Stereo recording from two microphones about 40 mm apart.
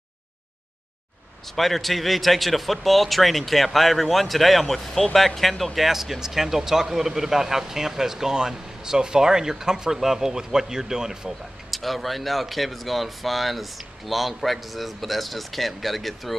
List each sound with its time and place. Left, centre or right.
1.5 s speech: centre
5.9 s speech: centre
11.7 s speech: centre